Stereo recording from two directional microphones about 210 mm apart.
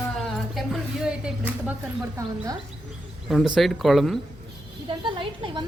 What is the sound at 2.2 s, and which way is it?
Speech, 15° right (ahead or behind).